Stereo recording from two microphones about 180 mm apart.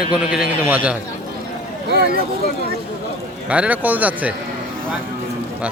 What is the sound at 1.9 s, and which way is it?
Speech, 60° right (ahead or behind).